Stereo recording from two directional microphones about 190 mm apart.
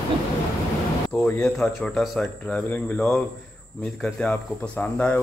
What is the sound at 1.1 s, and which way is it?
Speech, 10° left (ahead or behind).